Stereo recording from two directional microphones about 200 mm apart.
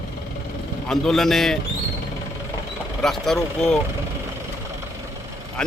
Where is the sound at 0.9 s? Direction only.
Centre (ahead or behind).